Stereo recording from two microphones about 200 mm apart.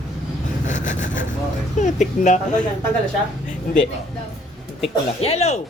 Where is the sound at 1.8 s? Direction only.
35° left (ahead or behind).